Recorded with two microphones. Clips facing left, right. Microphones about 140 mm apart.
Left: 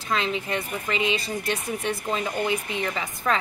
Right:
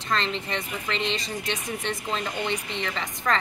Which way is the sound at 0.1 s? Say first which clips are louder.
Left 2 dB; 5° left (ahead or behind).